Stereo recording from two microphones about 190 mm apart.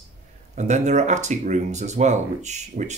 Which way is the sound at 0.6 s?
40° right (ahead or behind).